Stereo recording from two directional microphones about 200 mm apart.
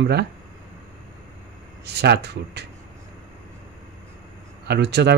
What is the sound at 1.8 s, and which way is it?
Speech, 55° right (ahead or behind).